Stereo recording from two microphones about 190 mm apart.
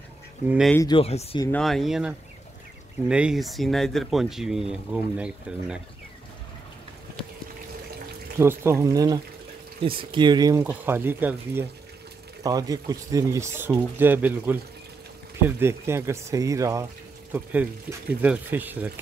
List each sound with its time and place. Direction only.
0.5 s speech: centre (ahead or behind)
0.7 s speech: 25° left (ahead or behind)
1.6 s speech: centre (ahead or behind)
8.4 s speech: 15° right (ahead or behind)
10.6 s speech: 10° right (ahead or behind)